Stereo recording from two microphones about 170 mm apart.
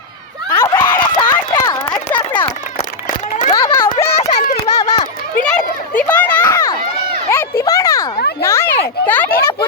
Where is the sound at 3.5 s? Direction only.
20° left (ahead or behind).